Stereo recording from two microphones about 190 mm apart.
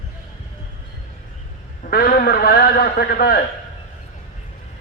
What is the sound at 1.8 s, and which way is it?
A man's voice, 50° left (ahead or behind).